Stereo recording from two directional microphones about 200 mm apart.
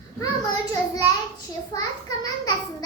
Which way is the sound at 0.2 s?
20° left (ahead or behind).